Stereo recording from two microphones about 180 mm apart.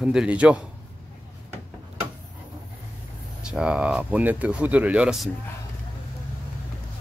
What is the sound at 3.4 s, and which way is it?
Speech, 5° right (ahead or behind).